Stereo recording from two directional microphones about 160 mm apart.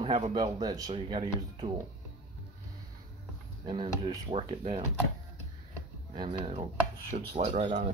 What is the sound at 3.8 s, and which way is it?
Speech, 30° right (ahead or behind).